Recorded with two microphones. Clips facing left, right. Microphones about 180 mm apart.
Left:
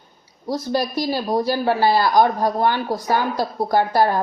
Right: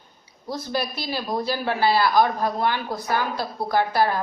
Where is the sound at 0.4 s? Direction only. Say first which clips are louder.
Left 5 dB; 40° left (ahead or behind).